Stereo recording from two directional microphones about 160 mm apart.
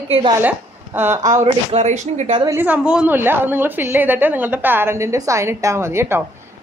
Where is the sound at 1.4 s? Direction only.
45° right (ahead or behind).